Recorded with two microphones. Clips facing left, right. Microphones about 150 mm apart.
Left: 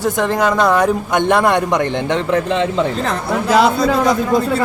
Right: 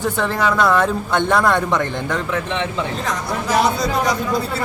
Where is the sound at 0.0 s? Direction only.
15° left (ahead or behind).